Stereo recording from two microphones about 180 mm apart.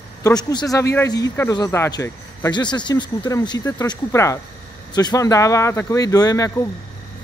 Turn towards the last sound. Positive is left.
turn(degrees=20)  # may be behind; listen again after turning